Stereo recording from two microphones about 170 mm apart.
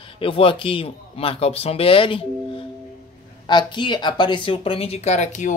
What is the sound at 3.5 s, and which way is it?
Speech, 25° left (ahead or behind).